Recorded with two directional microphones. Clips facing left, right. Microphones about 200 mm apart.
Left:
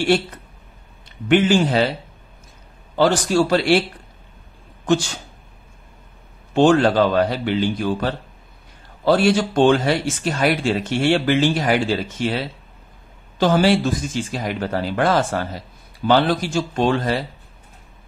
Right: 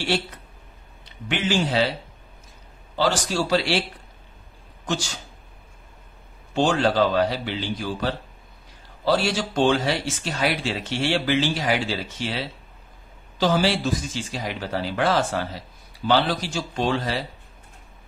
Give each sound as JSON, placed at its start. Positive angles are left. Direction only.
{"t": 1.0, "sound": "speech", "side_deg": 50}
{"t": 3.0, "sound": "speech", "side_deg": 50}
{"t": 6.5, "sound": "speech", "side_deg": 55}
{"t": 13.4, "sound": "speech", "side_deg": 55}